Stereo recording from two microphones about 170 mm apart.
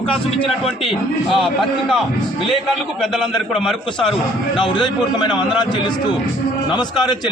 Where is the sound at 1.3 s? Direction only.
Centre (ahead or behind).